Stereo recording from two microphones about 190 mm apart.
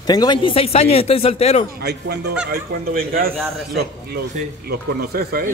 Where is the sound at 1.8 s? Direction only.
60° right (ahead or behind).